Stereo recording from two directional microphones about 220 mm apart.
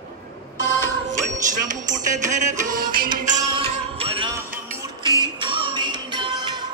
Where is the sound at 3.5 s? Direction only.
25° right (ahead or behind).